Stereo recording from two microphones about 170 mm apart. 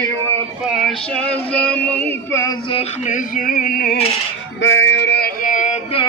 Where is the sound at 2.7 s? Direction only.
40° left (ahead or behind); by 4.0 s 55° left (ahead or behind).